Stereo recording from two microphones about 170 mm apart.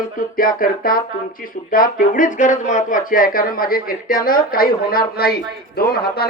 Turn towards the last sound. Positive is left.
turn(degrees=65)  # may be behind; listen again after turning